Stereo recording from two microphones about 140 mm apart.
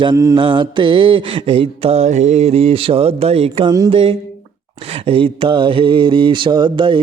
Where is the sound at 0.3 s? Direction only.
35° right (ahead or behind).